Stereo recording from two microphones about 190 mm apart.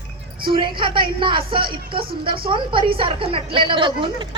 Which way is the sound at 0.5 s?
25° right (ahead or behind).